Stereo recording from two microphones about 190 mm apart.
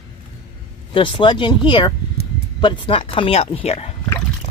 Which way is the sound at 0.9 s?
25° left (ahead or behind).